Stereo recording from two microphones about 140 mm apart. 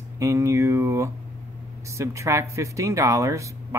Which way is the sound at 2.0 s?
20° right (ahead or behind).